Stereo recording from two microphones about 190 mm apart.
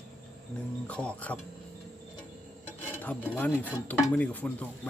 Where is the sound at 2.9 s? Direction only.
10° left (ahead or behind).